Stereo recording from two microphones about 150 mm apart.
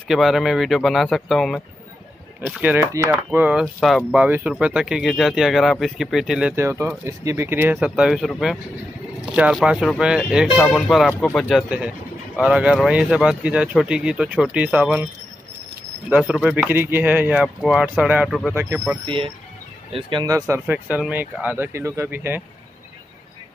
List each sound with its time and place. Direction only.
0.1 s speech: centre (ahead or behind)
2.4 s speech: 15° right (ahead or behind)
3.1 s speech: 10° right (ahead or behind)
6.5 s speech: 15° right (ahead or behind)
16.1 s speech: 5° right (ahead or behind)
18.5 s speech: 15° right (ahead or behind)
19.0 s speech: 35° right (ahead or behind)
20.3 s speech: 20° right (ahead or behind)